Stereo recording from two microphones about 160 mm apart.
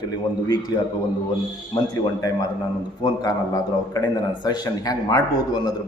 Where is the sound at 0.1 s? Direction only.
25° left (ahead or behind).